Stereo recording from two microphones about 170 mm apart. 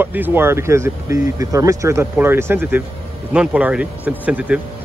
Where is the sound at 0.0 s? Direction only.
10° right (ahead or behind).